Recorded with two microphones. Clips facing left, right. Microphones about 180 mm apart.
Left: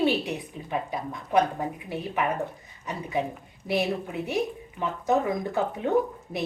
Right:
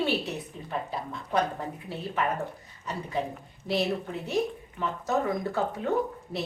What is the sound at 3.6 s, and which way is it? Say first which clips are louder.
A woman's voice: left 1 dB; 15° left (ahead or behind).